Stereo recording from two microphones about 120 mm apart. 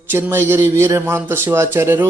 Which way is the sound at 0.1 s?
20° right (ahead or behind).